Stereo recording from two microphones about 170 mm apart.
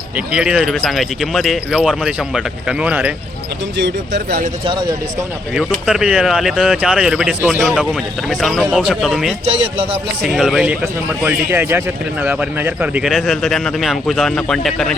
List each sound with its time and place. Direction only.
0.3 s speech: 5° right (ahead or behind)
3.8 s speech: 90° right
4.6 s speech: 30° right (ahead or behind)
5.5 s speech: 5° right (ahead or behind)
9.5 s speech: 35° right (ahead or behind)
10.2 s a man's voice: centre (ahead or behind)